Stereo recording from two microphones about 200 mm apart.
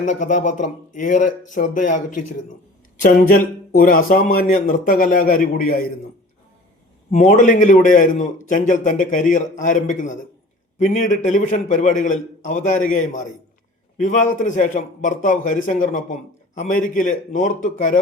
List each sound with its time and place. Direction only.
0.0 s a man's voice: 40° left (ahead or behind)
7.1 s a man's voice: 40° left (ahead or behind)